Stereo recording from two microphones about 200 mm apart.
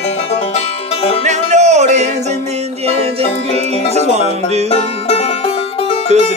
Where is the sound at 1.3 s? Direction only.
35° right (ahead or behind).